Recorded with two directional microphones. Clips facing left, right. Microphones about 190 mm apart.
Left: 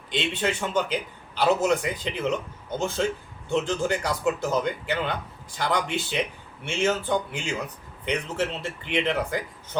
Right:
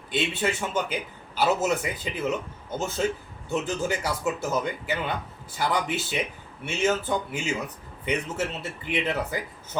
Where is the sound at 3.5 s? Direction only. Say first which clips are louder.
Left 2 dB; 5° right (ahead or behind).